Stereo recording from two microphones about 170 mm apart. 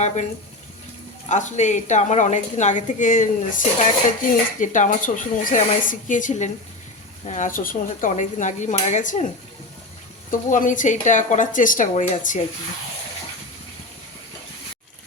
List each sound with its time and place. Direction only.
1.3 s a woman's voice: 45° left (ahead or behind)
10.5 s a woman's voice: 50° left (ahead or behind)